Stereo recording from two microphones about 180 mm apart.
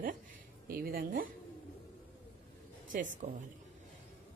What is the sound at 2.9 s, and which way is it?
Speech, 45° right (ahead or behind).